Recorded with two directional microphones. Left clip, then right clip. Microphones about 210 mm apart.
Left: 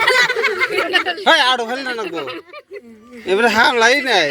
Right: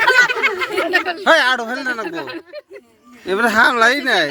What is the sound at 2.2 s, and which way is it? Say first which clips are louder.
Speech: left 1 dB; 40° right (ahead or behind).